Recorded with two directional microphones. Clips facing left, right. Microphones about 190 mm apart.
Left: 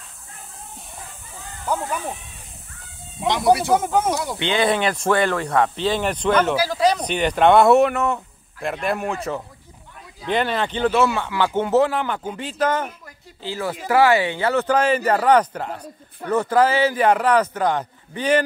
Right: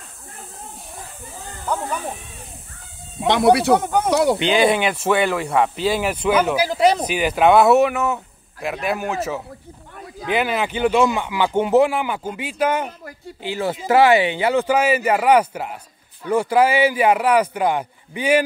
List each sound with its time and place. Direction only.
3.3 s speech: 65° right (ahead or behind)
3.8 s speech: 5° left (ahead or behind)
4.1 s speech: 70° right (ahead or behind)
4.4 s speech: 10° right (ahead or behind)
6.6 s speech: 25° right (ahead or behind)
7.1 s speech: 5° right (ahead or behind)
13.4 s speech: 20° right (ahead or behind)